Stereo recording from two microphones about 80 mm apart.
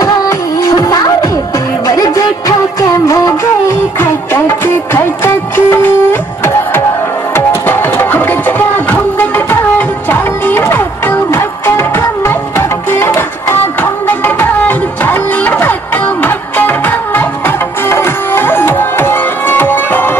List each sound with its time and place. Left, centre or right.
0.0 s music: left
7.3 s music: left